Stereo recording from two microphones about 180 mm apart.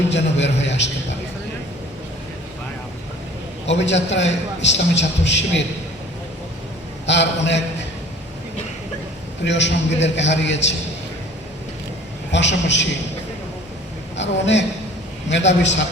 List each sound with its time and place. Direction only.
0.1 s a man's voice: 80° left
3.7 s a man's voice: 80° left
7.1 s a man's voice: 80° left
9.4 s a man's voice: 80° left
12.3 s a man's voice: 80° left
14.2 s a man's voice: 85° left